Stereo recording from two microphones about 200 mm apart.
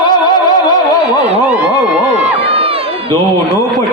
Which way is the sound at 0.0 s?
20° left (ahead or behind).